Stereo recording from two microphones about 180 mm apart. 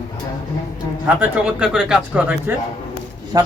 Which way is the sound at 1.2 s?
5° right (ahead or behind).